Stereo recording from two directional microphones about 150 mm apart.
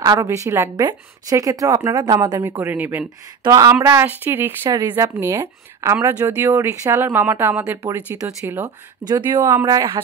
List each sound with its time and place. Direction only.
0.0 s a woman's voice: 25° right (ahead or behind)
3.4 s a woman's voice: 20° right (ahead or behind)